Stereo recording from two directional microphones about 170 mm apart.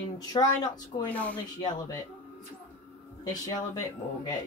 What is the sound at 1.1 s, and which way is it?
Speech, 10° left (ahead or behind).